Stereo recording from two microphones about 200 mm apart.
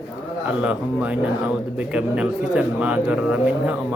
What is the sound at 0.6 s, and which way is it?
Speech, 5° right (ahead or behind).